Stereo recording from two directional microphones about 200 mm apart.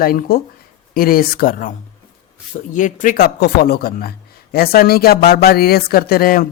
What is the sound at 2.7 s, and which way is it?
Speech, 40° left (ahead or behind).